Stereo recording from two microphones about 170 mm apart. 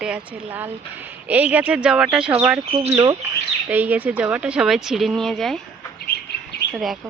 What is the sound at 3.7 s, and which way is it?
Speech, 10° right (ahead or behind).